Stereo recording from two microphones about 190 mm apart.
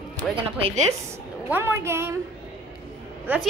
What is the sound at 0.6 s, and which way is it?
Speech, 30° right (ahead or behind).